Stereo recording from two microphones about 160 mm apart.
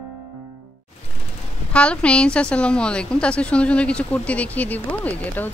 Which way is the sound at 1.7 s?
5° left (ahead or behind).